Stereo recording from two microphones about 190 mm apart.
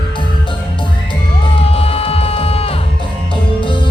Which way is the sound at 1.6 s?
30° left (ahead or behind).